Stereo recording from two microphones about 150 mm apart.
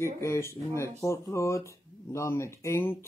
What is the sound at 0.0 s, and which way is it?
Speech, 20° left (ahead or behind).